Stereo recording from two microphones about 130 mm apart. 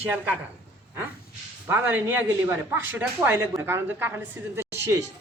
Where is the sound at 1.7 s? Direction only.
15° right (ahead or behind).